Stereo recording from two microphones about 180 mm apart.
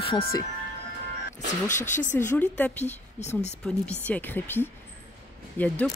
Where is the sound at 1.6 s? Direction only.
45° left (ahead or behind).